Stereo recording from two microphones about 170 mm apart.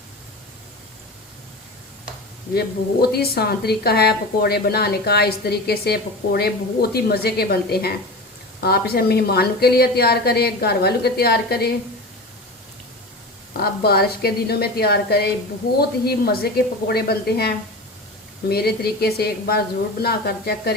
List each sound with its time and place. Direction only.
2.6 s a woman's voice: 65° left (ahead or behind)
13.6 s a woman's voice: 70° left (ahead or behind)